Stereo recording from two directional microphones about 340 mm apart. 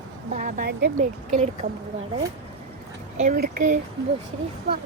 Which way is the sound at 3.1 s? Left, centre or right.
Right.